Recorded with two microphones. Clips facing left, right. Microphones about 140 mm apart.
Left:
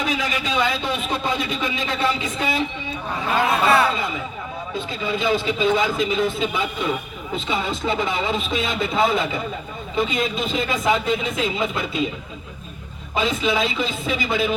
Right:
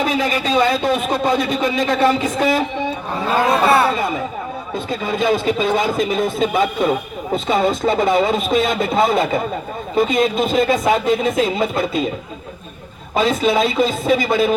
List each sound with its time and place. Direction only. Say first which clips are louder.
0.3 s a man's voice: right 6 dB; 35° right (ahead or behind)
4.9 s a man's voice: right 4 dB; 45° right (ahead or behind)
13.1 s a man's voice: right 5 dB; 40° right (ahead or behind)